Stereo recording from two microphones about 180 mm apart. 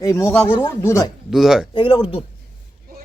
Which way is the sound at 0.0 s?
15° left (ahead or behind).